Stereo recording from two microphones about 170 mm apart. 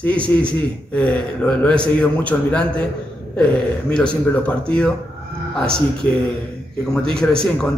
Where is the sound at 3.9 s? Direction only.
5° left (ahead or behind).